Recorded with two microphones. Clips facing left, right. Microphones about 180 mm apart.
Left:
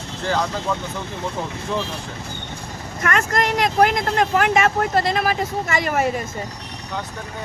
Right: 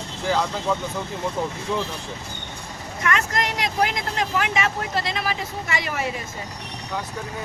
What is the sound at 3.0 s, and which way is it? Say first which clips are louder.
Speech: left 3 dB; 50° left (ahead or behind).